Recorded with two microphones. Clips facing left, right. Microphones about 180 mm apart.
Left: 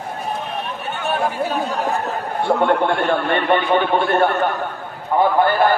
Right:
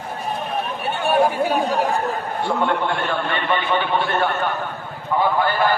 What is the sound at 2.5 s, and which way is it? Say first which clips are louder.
A man's voice: left 5 dB; 55° left (ahead or behind).